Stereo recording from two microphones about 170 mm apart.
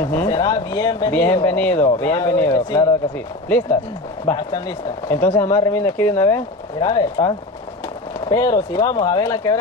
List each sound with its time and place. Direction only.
0.0 s speech: 15° left (ahead or behind)
4.3 s speech: 25° left (ahead or behind)